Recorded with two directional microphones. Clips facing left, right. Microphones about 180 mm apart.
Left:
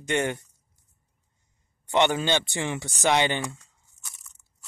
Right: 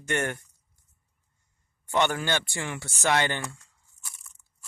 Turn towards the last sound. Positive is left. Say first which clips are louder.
# left 4 dB
turn(degrees=20)  # may be behind; listen again after turning